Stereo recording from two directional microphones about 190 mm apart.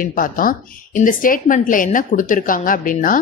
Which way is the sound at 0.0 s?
45° left (ahead or behind).